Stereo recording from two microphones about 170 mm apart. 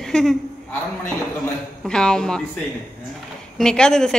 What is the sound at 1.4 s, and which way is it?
A woman's voice, 5° left (ahead or behind).